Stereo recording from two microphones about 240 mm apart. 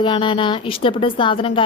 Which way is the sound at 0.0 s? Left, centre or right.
Left.